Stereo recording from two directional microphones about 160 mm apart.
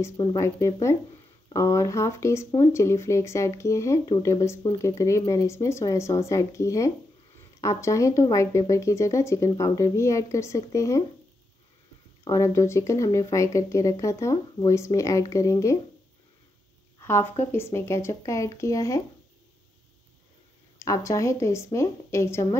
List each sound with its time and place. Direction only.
0.0 s speech: 25° left (ahead or behind)
12.3 s speech: 20° left (ahead or behind)
17.0 s a woman's voice: 15° left (ahead or behind)
20.8 s a woman's voice: 20° left (ahead or behind)